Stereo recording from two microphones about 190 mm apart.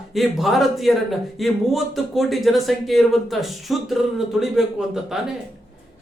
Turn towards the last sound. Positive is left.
turn(degrees=0)  # may be behind; listen again after turning